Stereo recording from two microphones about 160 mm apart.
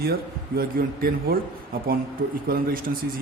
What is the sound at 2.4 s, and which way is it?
Speech, 65° right (ahead or behind).